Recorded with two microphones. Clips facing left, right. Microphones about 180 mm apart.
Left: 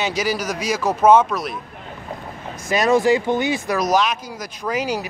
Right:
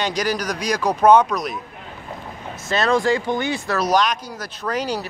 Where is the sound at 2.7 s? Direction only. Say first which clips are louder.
Left 3 dB; 15° left (ahead or behind).